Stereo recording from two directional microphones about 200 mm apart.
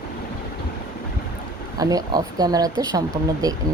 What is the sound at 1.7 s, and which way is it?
Speech, 20° right (ahead or behind).